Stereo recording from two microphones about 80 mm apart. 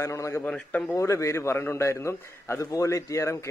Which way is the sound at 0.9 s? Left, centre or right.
Left.